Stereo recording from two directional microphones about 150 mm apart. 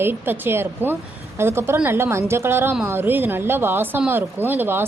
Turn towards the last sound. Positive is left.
turn(degrees=-15)  # may be behind; listen again after turning